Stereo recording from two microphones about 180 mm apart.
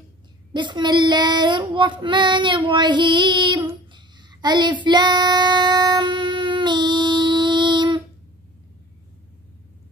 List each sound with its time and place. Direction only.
0.5 s child singing: 25° right (ahead or behind)